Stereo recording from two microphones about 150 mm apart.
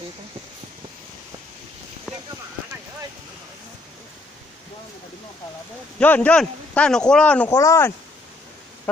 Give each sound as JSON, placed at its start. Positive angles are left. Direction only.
{"t": 5.9, "sound": "speech", "side_deg": 10}
{"t": 7.4, "sound": "speech", "side_deg": 20}